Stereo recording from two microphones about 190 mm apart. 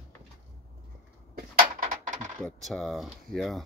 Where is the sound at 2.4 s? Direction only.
Centre (ahead or behind).